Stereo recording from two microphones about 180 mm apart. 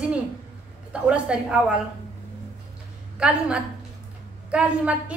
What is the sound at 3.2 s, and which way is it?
A woman's voice, 5° right (ahead or behind).